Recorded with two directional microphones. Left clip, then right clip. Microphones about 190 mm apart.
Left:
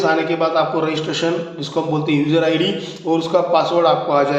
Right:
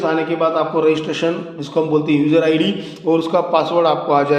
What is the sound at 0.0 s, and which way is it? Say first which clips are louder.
A man's voice: even; 40° right (ahead or behind).